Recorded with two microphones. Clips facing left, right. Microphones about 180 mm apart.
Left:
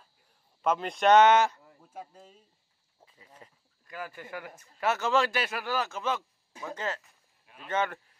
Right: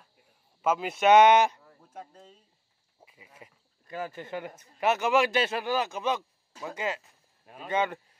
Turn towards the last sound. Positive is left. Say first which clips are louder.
# right 2 dB
turn(degrees=-15)  # may be behind; listen again after turning